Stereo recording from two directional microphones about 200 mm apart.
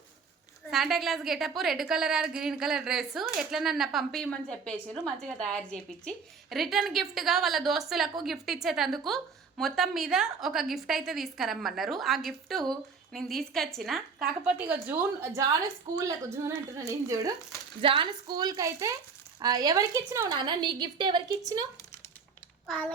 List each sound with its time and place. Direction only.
0.7 s a woman's voice: centre (ahead or behind); by 21.7 s 20° right (ahead or behind)
22.6 s a child's voice: 5° left (ahead or behind)